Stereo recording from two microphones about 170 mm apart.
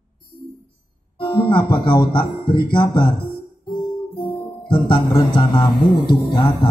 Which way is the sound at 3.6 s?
25° left (ahead or behind).